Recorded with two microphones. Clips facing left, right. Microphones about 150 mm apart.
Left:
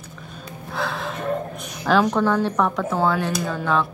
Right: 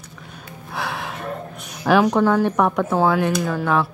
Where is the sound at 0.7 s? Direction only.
15° right (ahead or behind).